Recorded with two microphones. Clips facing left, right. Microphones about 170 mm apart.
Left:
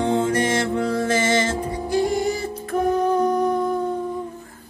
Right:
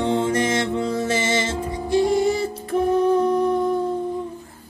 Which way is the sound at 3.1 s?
30° right (ahead or behind).